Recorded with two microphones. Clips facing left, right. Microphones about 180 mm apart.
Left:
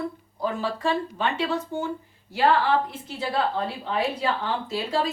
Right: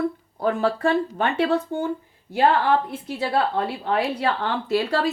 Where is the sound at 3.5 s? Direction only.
60° right (ahead or behind).